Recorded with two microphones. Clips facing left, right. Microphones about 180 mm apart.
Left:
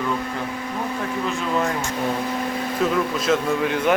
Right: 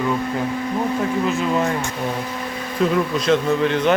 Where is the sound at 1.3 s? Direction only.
5° right (ahead or behind).